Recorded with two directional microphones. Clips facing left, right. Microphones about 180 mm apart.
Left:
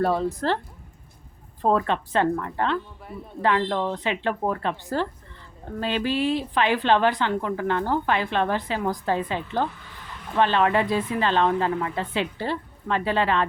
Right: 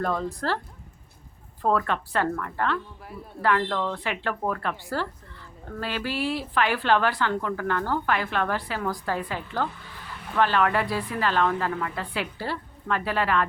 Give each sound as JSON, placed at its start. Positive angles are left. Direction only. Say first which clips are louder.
{"t": 0.2, "sound": "a woman's voice", "louder": "left 4 dB", "side_deg": 20}
{"t": 1.6, "sound": "a woman's voice", "louder": "left 2 dB", "side_deg": 20}
{"t": 3.1, "sound": "speech", "louder": "left 3 dB", "side_deg": 0}
{"t": 3.4, "sound": "a woman's voice", "louder": "left 2 dB", "side_deg": 20}